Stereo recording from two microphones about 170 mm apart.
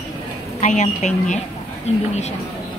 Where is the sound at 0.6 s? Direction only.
40° left (ahead or behind).